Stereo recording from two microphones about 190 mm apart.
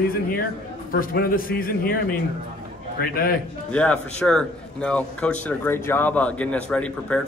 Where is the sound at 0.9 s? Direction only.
50° left (ahead or behind).